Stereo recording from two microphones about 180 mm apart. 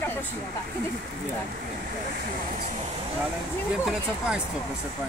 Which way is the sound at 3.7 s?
5° right (ahead or behind).